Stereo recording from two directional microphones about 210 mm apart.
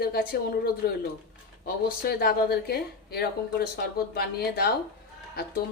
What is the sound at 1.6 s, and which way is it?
Speech, 45° left (ahead or behind).